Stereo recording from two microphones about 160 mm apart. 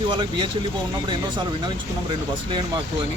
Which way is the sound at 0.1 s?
30° right (ahead or behind).